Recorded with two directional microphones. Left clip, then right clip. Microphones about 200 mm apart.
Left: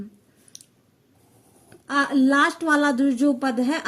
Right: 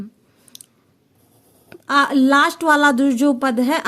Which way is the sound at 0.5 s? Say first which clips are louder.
Right 3 dB; 30° right (ahead or behind).